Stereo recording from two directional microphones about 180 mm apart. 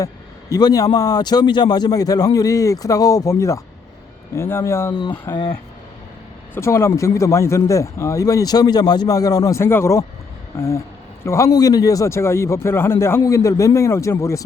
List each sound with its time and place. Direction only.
0.5 s a man's voice: 20° left (ahead or behind)
5.3 s a man's voice: 25° left (ahead or behind)
6.5 s a man's voice: 15° left (ahead or behind)